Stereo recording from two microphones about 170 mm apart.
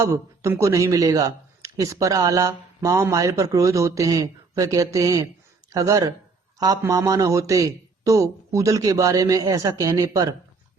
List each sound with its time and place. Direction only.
0.0 s a man's voice: 15° right (ahead or behind)